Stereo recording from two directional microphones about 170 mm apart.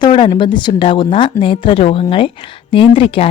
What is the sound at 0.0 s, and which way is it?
Speech, 30° left (ahead or behind).